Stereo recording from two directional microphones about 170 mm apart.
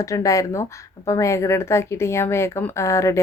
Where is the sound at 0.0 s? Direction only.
20° left (ahead or behind).